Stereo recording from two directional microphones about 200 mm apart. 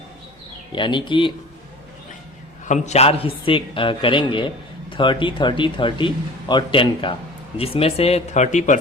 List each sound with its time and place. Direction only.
0.7 s a man's voice: 25° left (ahead or behind)
2.6 s a man's voice: 35° left (ahead or behind)